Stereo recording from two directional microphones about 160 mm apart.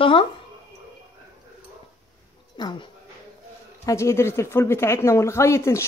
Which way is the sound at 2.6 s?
25° left (ahead or behind).